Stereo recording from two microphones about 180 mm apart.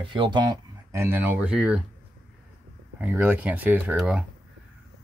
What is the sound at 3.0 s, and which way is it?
Speech, 10° right (ahead or behind).